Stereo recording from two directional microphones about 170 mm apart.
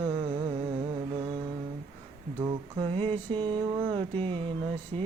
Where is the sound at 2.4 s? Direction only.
30° right (ahead or behind).